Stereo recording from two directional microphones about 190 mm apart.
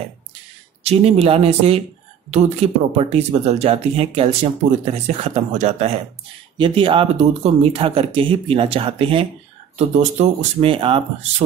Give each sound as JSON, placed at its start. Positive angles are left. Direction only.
{"t": 0.8, "sound": "speech", "side_deg": -30}